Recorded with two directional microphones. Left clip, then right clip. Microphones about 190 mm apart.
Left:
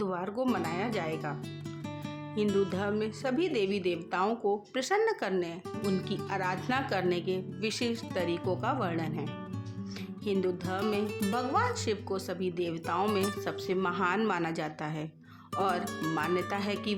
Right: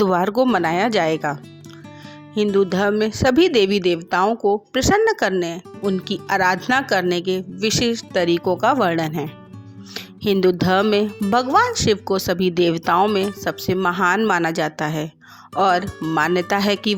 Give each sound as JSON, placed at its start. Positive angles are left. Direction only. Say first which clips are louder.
{"t": 0.0, "sound": "speech", "louder": "right 15 dB", "side_deg": -50}
{"t": 5.8, "sound": "speech", "louder": "right 10 dB", "side_deg": 0}
{"t": 6.2, "sound": "speech", "louder": "right 17 dB", "side_deg": -45}
{"t": 10.4, "sound": "speech", "louder": "right 15 dB", "side_deg": -45}